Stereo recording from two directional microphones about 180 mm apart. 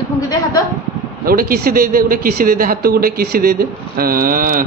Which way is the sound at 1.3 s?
55° right (ahead or behind).